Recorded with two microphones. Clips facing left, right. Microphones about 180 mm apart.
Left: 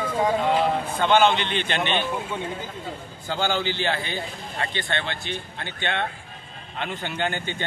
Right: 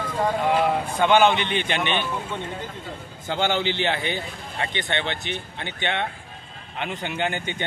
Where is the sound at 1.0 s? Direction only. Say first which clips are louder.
Right 1 dB; 15° right (ahead or behind).